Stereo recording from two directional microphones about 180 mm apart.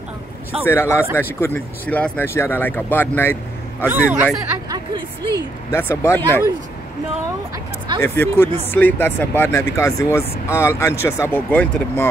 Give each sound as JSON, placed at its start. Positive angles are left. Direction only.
{"t": 0.7, "sound": "speech", "side_deg": 15}
{"t": 3.9, "sound": "speech", "side_deg": -5}
{"t": 4.6, "sound": "a woman's voice", "side_deg": -25}
{"t": 5.7, "sound": "speech", "side_deg": 15}
{"t": 8.0, "sound": "speech", "side_deg": 10}